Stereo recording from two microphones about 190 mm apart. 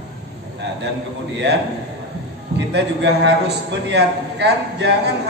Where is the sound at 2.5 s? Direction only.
65° right (ahead or behind).